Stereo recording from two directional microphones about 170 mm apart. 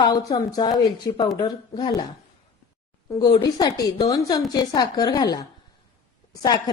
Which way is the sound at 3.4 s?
25° left (ahead or behind).